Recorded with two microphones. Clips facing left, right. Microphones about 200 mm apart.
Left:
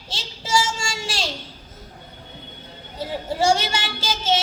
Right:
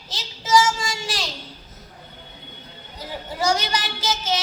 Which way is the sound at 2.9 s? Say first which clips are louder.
Left 5 dB; 30° left (ahead or behind).